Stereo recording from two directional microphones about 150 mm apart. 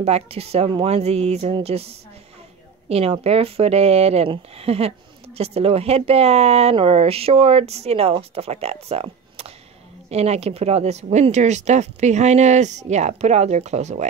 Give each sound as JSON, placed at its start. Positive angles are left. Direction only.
{"t": 0.0, "sound": "speech", "side_deg": -45}